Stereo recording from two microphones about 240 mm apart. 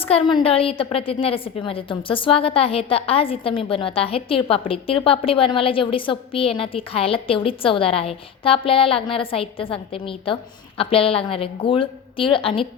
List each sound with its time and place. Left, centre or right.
0.0 s a woman's voice: left